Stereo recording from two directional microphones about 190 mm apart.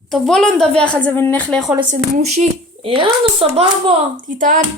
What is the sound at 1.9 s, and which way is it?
A woman's voice, 35° right (ahead or behind).